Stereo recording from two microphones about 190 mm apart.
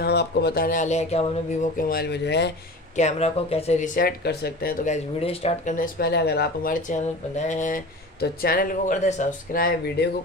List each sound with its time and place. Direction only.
0.0 s speech: 60° left (ahead or behind)
3.0 s speech: 35° left (ahead or behind); by 4.7 s 55° left (ahead or behind)
4.8 s speech: 35° left (ahead or behind)
8.2 s speech: 50° left (ahead or behind)